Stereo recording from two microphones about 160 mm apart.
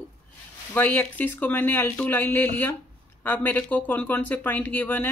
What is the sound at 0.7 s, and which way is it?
Speech, 10° left (ahead or behind).